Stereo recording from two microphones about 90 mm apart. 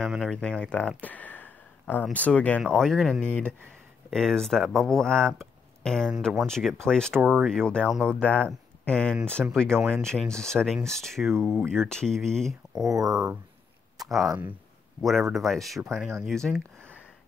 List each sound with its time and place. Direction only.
0.3 s speech: 10° left (ahead or behind)
2.7 s speech: centre (ahead or behind)
3.3 s speech: 15° left (ahead or behind)
4.1 s speech: 5° left (ahead or behind)
7.2 s speech: 15° right (ahead or behind)
7.4 s speech: 5° left (ahead or behind)
9.4 s speech: 10° right (ahead or behind)
9.8 s speech: 25° right (ahead or behind)
10.0 s speech: 5° left (ahead or behind)
12.8 s speech: 40° right (ahead or behind)
13.9 s a sound: centre (ahead or behind)
15.0 s speech: centre (ahead or behind)